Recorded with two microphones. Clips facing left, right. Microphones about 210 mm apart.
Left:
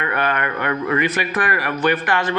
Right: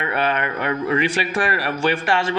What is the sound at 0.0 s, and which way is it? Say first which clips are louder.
Speech: even; 30° right (ahead or behind).